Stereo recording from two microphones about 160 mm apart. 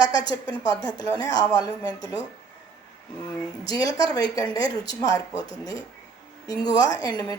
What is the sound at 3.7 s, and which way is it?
A woman's voice, 25° left (ahead or behind).